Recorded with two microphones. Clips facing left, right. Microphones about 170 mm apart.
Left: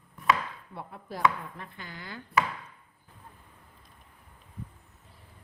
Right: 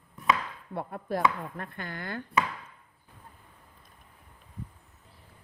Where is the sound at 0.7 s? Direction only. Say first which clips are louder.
Right 9 dB; 55° right (ahead or behind).